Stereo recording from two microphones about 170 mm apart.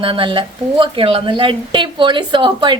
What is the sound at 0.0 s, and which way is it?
A woman's voice, 30° right (ahead or behind).